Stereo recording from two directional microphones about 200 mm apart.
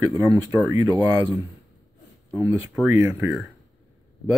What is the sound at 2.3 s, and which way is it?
Speech, 15° right (ahead or behind).